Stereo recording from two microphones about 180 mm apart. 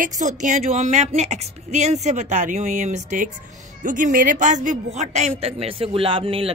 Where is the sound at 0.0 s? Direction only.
45° right (ahead or behind).